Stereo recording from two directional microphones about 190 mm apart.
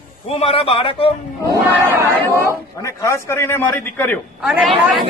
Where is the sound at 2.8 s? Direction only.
15° left (ahead or behind).